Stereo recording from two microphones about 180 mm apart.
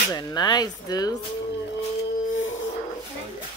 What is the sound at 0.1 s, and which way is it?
Speech, 20° left (ahead or behind).